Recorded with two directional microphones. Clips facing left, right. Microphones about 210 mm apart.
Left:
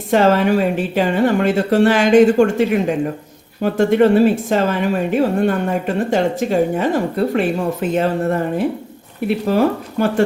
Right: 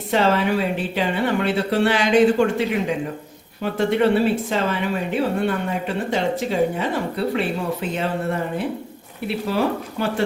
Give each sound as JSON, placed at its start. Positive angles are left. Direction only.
{"t": 0.1, "sound": "speech", "side_deg": 45}